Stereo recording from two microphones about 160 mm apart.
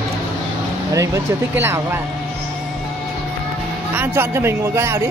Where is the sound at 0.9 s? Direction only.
20° right (ahead or behind).